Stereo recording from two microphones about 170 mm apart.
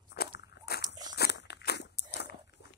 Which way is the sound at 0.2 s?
70° left (ahead or behind).